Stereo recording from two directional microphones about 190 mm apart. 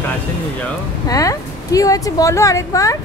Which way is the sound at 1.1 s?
20° left (ahead or behind).